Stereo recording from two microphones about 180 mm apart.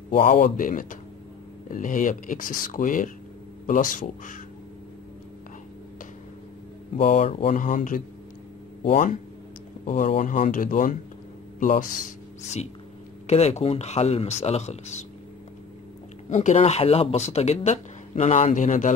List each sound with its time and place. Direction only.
0.2 s speech: 50° left (ahead or behind)
7.1 s speech: 35° left (ahead or behind)
7.5 s speech: 45° left (ahead or behind)
13.3 s speech: 35° left (ahead or behind)
16.3 s speech: 40° left (ahead or behind)